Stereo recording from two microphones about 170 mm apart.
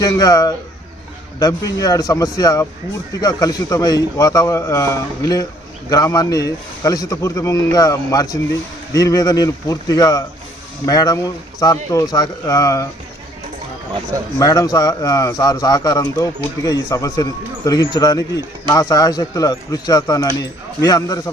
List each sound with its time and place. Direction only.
0.0 s speech: 20° left (ahead or behind)
14.3 s speech: 20° left (ahead or behind)